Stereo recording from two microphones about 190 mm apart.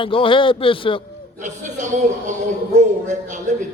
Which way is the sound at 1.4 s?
40° right (ahead or behind).